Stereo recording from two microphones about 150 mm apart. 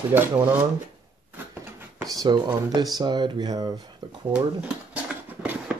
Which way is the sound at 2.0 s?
25° right (ahead or behind).